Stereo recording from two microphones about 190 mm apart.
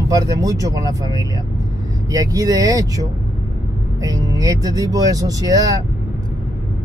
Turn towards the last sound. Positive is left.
turn(degrees=-20)  # may be behind; listen again after turning